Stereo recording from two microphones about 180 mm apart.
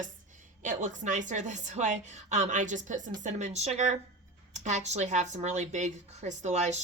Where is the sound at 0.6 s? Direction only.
40° right (ahead or behind).